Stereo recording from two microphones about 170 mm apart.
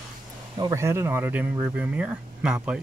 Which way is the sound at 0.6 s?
20° right (ahead or behind).